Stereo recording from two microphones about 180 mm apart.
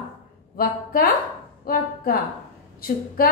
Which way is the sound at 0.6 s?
55° left (ahead or behind).